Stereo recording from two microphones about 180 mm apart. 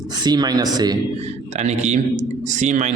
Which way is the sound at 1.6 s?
40° right (ahead or behind).